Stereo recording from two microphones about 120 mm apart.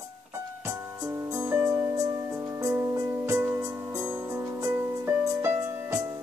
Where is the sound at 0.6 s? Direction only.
25° right (ahead or behind).